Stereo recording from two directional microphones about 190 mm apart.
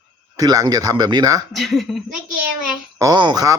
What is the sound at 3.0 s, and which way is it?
Speech, 20° right (ahead or behind).